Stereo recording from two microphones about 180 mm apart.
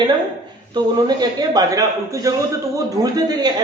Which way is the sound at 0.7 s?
25° right (ahead or behind).